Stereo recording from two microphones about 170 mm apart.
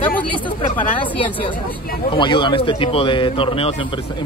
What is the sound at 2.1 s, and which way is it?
A man's voice, 30° left (ahead or behind).